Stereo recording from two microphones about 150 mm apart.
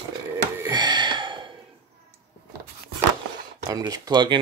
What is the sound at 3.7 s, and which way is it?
Speech, 25° right (ahead or behind).